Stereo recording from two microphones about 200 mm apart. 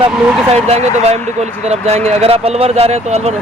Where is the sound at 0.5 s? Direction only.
35° right (ahead or behind).